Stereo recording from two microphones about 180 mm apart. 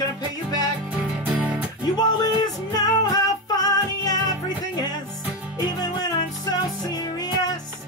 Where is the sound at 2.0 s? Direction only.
20° left (ahead or behind).